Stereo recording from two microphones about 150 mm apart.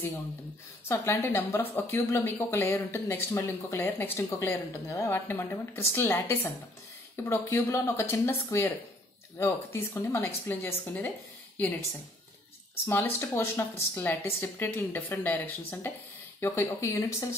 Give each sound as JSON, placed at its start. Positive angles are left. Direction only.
{"t": 0.8, "sound": "a woman's voice", "side_deg": 15}
{"t": 12.8, "sound": "speech", "side_deg": 15}